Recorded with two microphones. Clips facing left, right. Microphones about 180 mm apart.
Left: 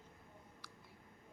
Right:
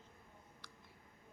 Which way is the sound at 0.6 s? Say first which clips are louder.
Left 1 dB; 10° left (ahead or behind).